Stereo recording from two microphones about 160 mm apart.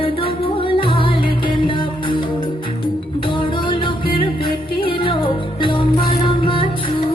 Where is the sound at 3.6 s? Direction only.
30° left (ahead or behind).